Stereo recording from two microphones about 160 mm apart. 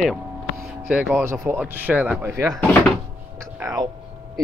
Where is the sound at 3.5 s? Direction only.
20° right (ahead or behind).